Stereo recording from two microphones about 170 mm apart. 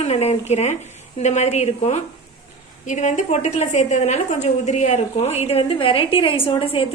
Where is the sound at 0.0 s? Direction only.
35° left (ahead or behind).